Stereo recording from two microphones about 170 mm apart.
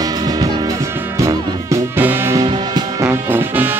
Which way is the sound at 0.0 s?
20° right (ahead or behind).